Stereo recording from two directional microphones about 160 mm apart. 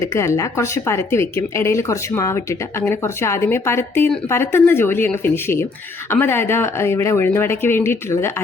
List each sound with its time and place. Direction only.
0.0 s speech: 20° left (ahead or behind)